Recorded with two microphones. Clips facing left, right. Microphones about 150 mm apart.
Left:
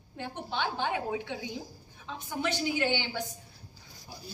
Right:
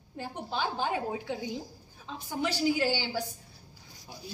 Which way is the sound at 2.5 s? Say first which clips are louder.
Right 2 dB; 35° right (ahead or behind).